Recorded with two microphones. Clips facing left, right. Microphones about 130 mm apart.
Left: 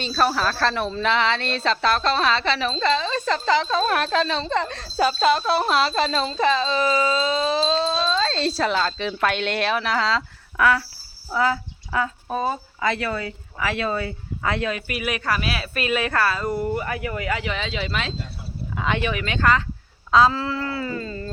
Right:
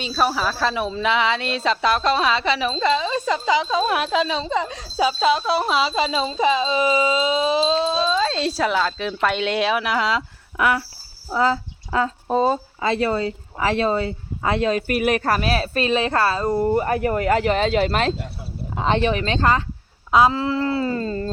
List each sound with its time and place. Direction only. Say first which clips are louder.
0.0 s speech: even; 5° right (ahead or behind); by 14.8 s 30° right (ahead or behind)
14.8 s speech: right 6 dB; 45° right (ahead or behind)
18.8 s speech: right 5 dB; 30° right (ahead or behind)
20.1 s a sound: right 1 dB; 20° right (ahead or behind); by 21.2 s 40° right (ahead or behind)